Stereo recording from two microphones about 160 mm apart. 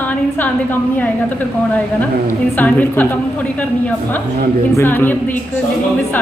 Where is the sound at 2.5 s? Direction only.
10° left (ahead or behind).